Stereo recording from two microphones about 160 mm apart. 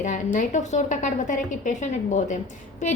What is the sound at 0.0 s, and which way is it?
A woman's voice, 50° left (ahead or behind).